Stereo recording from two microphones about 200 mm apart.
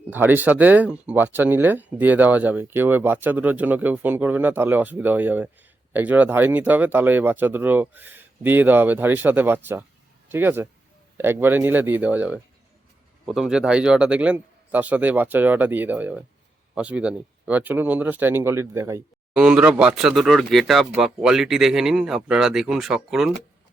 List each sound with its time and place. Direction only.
0.1 s speech: 10° right (ahead or behind)